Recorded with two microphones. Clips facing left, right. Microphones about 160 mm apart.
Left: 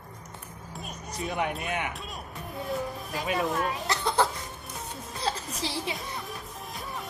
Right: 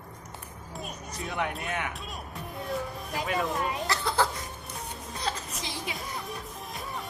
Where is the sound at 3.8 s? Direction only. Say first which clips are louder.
Left 1 dB; 20° left (ahead or behind).